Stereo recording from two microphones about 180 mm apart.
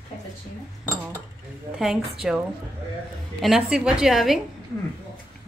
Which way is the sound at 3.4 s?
5° right (ahead or behind).